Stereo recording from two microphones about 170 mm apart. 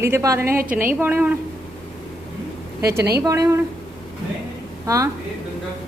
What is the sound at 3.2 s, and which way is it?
Speech, 15° right (ahead or behind).